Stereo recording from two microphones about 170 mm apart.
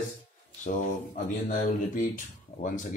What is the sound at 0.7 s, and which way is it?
Speech, 50° left (ahead or behind).